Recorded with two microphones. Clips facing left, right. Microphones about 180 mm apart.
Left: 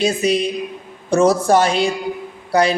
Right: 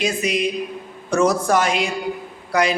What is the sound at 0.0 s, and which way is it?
A man's voice, 30° left (ahead or behind).